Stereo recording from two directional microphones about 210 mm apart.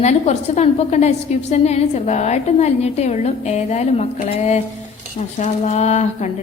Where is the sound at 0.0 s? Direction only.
30° left (ahead or behind).